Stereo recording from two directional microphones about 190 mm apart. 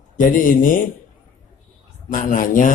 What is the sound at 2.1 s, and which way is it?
Speech, 45° left (ahead or behind).